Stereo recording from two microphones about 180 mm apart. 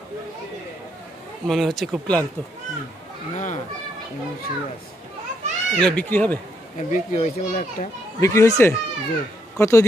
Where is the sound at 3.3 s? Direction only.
40° left (ahead or behind).